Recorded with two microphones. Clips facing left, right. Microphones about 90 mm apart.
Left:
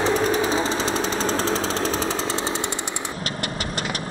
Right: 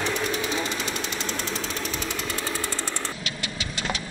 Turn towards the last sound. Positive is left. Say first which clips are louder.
# left 6 dB
turn(degrees=50)  # may be behind; listen again after turning